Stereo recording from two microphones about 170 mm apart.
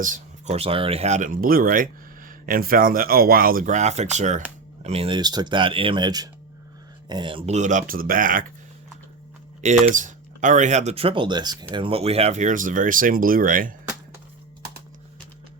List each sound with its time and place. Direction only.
0.0 s speech: 45° right (ahead or behind)
9.6 s speech: 45° right (ahead or behind)